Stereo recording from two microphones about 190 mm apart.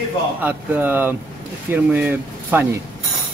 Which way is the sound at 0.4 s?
10° right (ahead or behind).